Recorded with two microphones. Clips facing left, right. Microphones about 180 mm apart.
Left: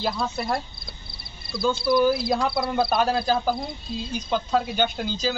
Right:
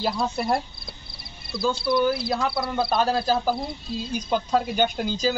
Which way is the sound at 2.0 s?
15° left (ahead or behind).